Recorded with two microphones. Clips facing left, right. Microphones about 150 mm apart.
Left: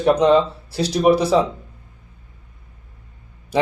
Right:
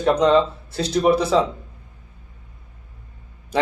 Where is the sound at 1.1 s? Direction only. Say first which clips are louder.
Left 2 dB; 30° left (ahead or behind).